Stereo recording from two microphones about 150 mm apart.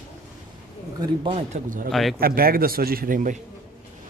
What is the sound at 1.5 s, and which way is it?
Speech, 60° right (ahead or behind).